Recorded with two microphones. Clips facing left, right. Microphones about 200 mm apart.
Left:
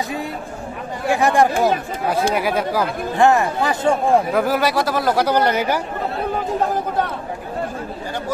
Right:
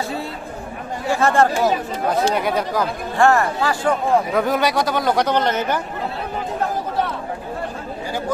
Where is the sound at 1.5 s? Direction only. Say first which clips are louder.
Left 1 dB; 55° left (ahead or behind).